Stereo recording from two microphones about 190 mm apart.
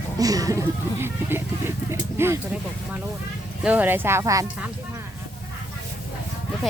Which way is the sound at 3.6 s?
10° right (ahead or behind).